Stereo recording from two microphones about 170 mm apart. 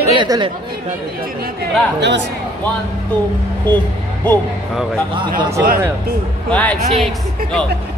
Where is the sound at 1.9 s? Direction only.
90° right.